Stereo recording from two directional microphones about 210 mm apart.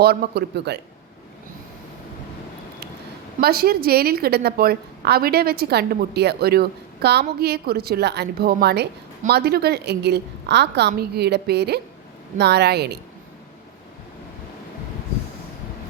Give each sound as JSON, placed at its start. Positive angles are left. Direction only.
{"t": 0.0, "sound": "a woman's voice", "side_deg": -50}
{"t": 3.4, "sound": "a woman's voice", "side_deg": -45}